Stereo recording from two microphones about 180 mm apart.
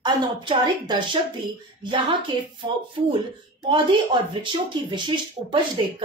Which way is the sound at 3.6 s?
25° right (ahead or behind).